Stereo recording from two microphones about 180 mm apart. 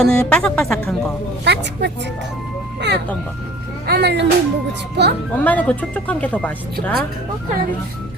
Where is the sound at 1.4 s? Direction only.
70° right (ahead or behind).